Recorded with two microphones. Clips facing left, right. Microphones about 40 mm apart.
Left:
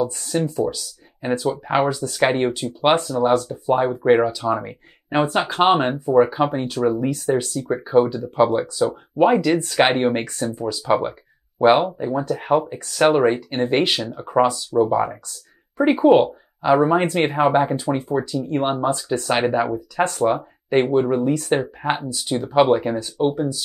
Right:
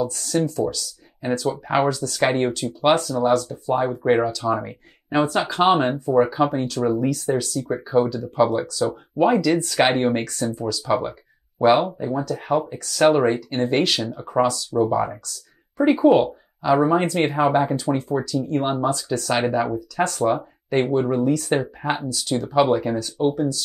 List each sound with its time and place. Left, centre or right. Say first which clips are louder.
0.0 s speech: even; left
5.1 s speech: left 1 dB; left